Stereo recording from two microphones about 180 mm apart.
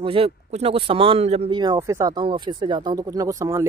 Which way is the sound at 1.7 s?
15° right (ahead or behind).